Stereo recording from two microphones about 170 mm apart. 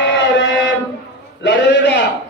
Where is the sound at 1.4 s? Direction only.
90° left.